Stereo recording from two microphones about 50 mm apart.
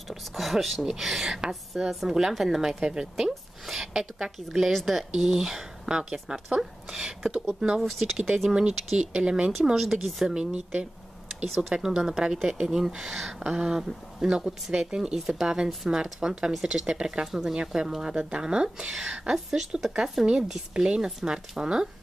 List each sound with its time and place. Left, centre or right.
0.1 s a woman's voice: centre
8.5 s a woman's voice: centre
9.8 s a woman's voice: centre
10.3 s a woman's voice: centre
19.3 s a woman's voice: centre